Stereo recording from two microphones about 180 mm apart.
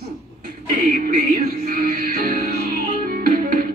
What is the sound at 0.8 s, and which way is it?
Music, 50° right (ahead or behind).